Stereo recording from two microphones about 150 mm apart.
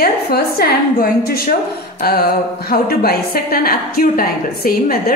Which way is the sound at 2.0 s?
90° left.